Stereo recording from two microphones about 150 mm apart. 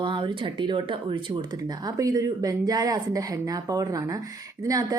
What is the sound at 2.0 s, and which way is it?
Speech, 25° right (ahead or behind).